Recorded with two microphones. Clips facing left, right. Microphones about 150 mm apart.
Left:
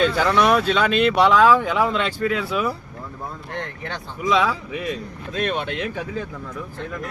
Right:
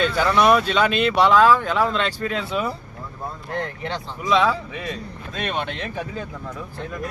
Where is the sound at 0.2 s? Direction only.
10° right (ahead or behind).